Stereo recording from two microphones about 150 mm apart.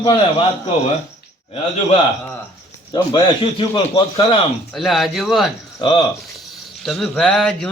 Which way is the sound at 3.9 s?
30° left (ahead or behind).